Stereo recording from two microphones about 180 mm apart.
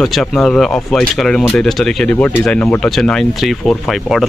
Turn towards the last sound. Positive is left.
turn(degrees=0)  # may be behind; listen again after turning